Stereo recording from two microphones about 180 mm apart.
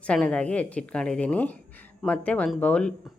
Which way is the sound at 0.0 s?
5° left (ahead or behind).